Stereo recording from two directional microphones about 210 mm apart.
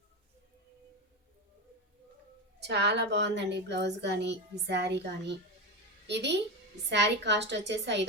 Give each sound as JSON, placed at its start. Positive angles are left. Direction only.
{"t": 2.6, "sound": "a woman's voice", "side_deg": -55}